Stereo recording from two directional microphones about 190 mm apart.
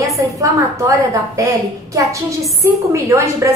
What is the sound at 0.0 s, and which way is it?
A woman's voice, 15° right (ahead or behind).